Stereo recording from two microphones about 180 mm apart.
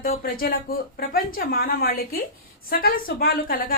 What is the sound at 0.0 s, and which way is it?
A woman's voice, 55° left (ahead or behind).